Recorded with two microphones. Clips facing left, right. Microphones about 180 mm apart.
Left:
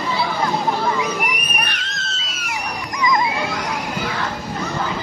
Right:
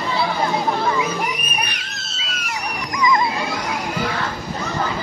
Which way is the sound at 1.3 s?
15° right (ahead or behind).